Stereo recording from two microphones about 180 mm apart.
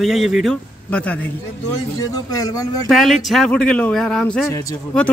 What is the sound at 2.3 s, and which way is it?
Speech, 20° left (ahead or behind).